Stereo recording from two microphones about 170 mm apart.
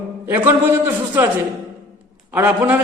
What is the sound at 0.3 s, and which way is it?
Speech, 15° right (ahead or behind).